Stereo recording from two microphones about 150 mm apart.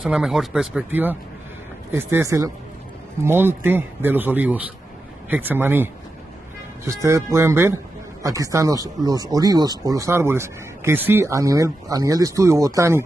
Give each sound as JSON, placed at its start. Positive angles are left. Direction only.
{"t": 0.0, "sound": "speech", "side_deg": -5}
{"t": 6.9, "sound": "speech", "side_deg": -20}